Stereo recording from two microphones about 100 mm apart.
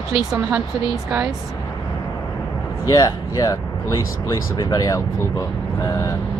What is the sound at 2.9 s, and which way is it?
Speech, 40° left (ahead or behind).